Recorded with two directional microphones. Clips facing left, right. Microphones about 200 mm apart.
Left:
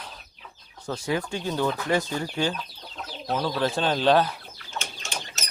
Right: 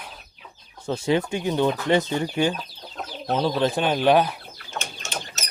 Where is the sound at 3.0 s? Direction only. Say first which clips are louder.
Right 4 dB; 65° right (ahead or behind).